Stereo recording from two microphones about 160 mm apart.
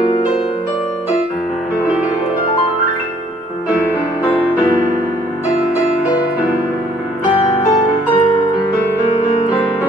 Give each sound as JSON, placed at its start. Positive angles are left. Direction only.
{"t": 0.0, "sound": "music", "side_deg": 30}
{"t": 8.1, "sound": "music", "side_deg": 30}